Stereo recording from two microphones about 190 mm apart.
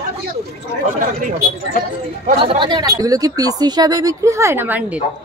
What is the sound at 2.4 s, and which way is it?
A woman's voice, 25° right (ahead or behind).